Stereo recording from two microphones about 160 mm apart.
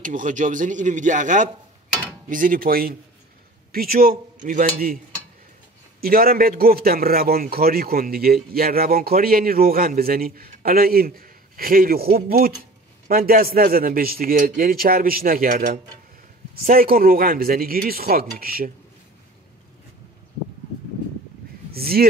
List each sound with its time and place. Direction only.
0.0 s a man's voice: 55° right (ahead or behind)
5.9 s a man's voice: 70° right (ahead or behind)
21.7 s a man's voice: 70° right (ahead or behind)